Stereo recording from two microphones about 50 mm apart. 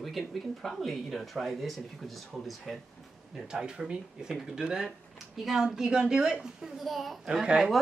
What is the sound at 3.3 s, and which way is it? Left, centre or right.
Speech, centre.